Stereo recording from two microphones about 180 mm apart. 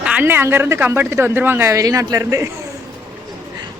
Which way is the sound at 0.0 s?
10° right (ahead or behind).